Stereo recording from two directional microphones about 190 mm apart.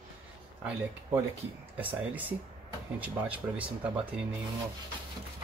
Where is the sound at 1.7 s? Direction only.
10° right (ahead or behind).